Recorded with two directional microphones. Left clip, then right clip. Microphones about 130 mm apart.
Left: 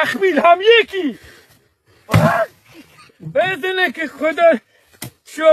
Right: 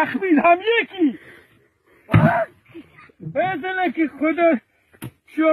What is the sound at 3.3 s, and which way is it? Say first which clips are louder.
Speech: left 5 dB; 40° left (ahead or behind).